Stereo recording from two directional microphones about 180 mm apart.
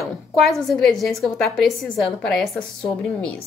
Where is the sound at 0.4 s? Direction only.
Centre (ahead or behind).